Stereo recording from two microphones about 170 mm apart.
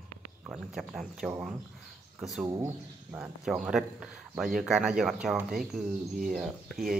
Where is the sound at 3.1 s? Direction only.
5° right (ahead or behind).